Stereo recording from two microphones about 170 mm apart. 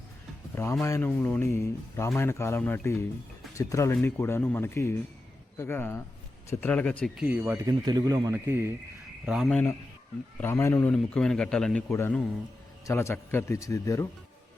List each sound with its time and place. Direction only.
0.5 s speech: 15° left (ahead or behind)
7.2 s speech: 10° right (ahead or behind)
7.7 s speech: 25° right (ahead or behind)
9.2 s a man's voice: centre (ahead or behind)
10.4 s speech: 15° left (ahead or behind)
10.9 s a man's voice: 5° left (ahead or behind)
11.9 s speech: 15° left (ahead or behind)